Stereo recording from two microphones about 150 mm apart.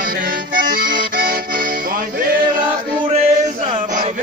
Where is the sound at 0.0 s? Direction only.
70° right (ahead or behind).